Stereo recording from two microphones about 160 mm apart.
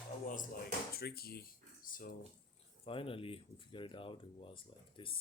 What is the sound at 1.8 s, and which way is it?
Speech, 60° left (ahead or behind).